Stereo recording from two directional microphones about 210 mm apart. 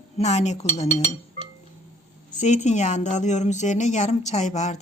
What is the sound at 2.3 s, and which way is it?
A woman's voice, 35° left (ahead or behind).